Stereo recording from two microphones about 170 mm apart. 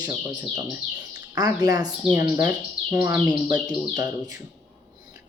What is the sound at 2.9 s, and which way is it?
Speech, 10° right (ahead or behind).